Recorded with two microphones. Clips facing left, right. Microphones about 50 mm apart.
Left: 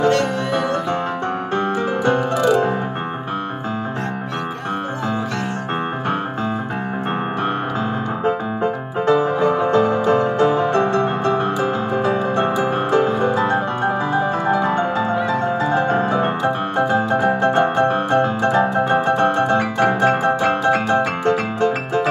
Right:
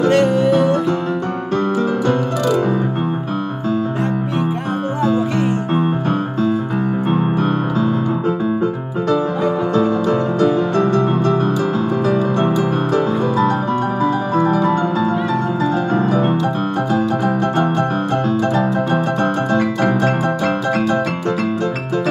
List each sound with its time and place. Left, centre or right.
0.1 s music: centre
9.7 s music: left
16.9 s piano: left